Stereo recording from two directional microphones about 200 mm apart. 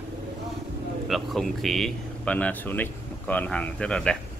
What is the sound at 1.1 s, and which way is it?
Speech, centre (ahead or behind).